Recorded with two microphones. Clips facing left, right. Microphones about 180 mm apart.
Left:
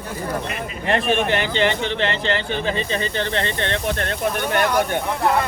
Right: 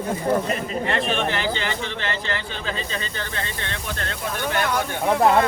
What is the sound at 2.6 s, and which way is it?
Speech, 20° left (ahead or behind).